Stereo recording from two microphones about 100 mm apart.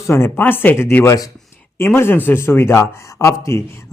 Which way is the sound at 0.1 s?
25° left (ahead or behind).